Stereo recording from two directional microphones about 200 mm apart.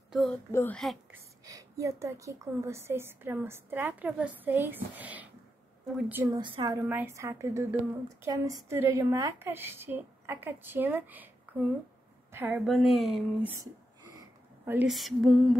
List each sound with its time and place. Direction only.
0.1 s a child's voice: centre (ahead or behind)
0.5 s a child's voice: 15° left (ahead or behind)
1.1 s a woman's voice: 15° right (ahead or behind)
6.4 s a woman's voice: 20° right (ahead or behind); by 13.6 s centre (ahead or behind)
14.6 s speech: 10° right (ahead or behind)